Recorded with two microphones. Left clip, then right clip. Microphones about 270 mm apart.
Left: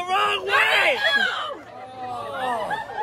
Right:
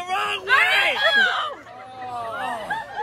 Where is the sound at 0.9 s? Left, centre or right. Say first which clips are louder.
Right 3 dB; centre.